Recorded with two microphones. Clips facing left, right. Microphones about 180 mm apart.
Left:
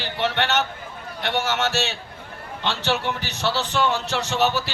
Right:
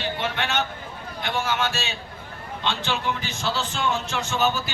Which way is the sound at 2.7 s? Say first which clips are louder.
Left 2 dB; 75° left (ahead or behind).